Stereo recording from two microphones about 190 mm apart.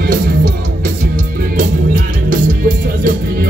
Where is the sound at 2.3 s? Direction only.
45° right (ahead or behind).